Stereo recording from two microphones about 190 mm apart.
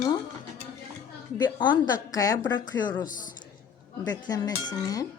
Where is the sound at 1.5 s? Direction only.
25° left (ahead or behind).